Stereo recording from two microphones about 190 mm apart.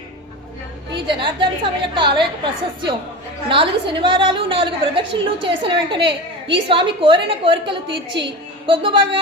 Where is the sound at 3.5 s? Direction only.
25° right (ahead or behind).